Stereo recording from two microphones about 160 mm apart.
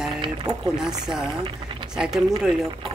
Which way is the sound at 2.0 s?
5° right (ahead or behind).